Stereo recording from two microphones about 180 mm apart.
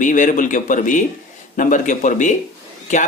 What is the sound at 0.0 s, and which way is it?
A man's voice, 45° left (ahead or behind).